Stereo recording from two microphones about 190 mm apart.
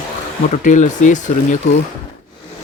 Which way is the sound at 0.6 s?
40° left (ahead or behind).